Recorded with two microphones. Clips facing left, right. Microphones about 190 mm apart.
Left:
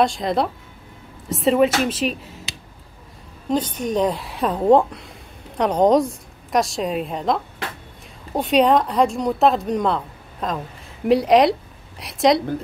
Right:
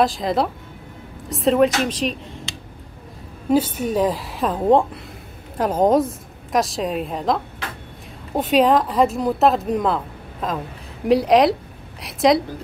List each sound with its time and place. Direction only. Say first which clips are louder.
0.0 s speech: even; centre (ahead or behind)
3.4 s speech: right 3 dB; 5° right (ahead or behind)